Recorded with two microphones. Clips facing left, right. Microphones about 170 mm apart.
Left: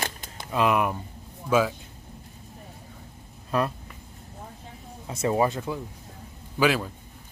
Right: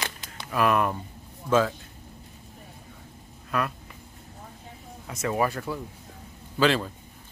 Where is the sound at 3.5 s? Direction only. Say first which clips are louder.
Left 3 dB; 30° left (ahead or behind).